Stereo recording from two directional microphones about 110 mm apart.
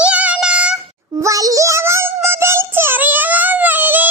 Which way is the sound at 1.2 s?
30° right (ahead or behind).